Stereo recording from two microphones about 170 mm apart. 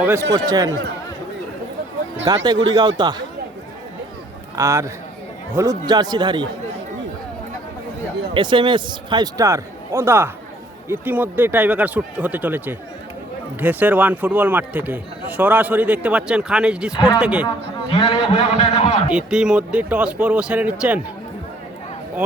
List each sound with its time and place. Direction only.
0.0 s a man's voice: 15° right (ahead or behind)
2.2 s a man's voice: 25° right (ahead or behind)
4.5 s a man's voice: 20° right (ahead or behind)
8.3 s a man's voice: 30° right (ahead or behind); by 17.4 s 5° right (ahead or behind)
17.9 s a man's voice: 30° left (ahead or behind)
19.0 s a man's voice: 5° right (ahead or behind)